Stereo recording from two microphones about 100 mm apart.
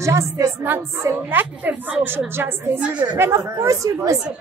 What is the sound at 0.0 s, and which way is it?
A woman's voice, 30° right (ahead or behind).